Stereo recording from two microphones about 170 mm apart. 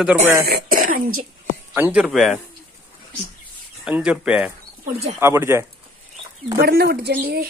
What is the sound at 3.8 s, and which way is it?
Speech, 5° right (ahead or behind).